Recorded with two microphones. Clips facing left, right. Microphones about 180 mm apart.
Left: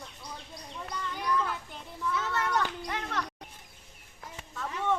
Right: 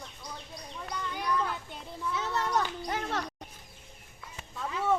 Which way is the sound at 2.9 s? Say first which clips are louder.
Right 2 dB; 30° right (ahead or behind).